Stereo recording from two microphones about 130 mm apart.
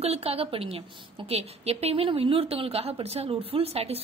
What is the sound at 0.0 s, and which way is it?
A woman's voice, 50° right (ahead or behind).